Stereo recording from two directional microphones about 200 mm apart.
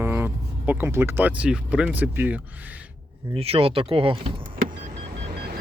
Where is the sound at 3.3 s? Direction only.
30° right (ahead or behind).